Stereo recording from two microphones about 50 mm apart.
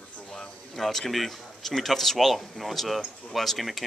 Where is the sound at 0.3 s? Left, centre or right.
Centre.